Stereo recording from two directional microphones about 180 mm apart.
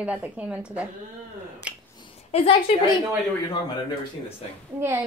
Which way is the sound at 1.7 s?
5° right (ahead or behind).